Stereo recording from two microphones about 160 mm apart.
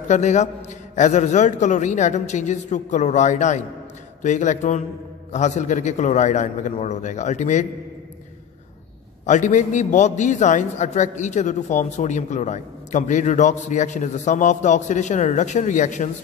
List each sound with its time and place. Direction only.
0.1 s a man's voice: 45° left (ahead or behind)
9.2 s a man's voice: 50° left (ahead or behind)